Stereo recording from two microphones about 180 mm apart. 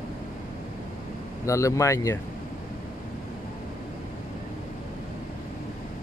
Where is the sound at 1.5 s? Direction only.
15° left (ahead or behind).